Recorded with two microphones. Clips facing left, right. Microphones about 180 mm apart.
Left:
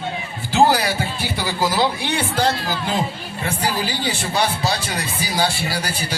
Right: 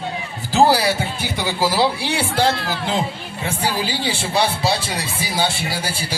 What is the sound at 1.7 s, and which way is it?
Speech, 30° right (ahead or behind).